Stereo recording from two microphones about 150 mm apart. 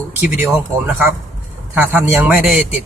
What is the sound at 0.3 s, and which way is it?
Speech, 10° right (ahead or behind).